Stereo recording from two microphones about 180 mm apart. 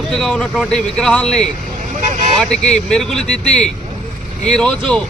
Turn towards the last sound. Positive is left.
turn(degrees=5)  # may be behind; listen again after turning